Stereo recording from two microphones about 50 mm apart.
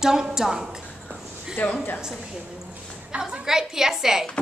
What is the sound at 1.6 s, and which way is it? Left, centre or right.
Speech, left.